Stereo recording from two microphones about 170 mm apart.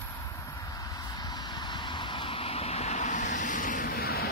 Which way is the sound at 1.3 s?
25° left (ahead or behind).